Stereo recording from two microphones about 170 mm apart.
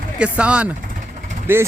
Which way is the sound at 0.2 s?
5° right (ahead or behind).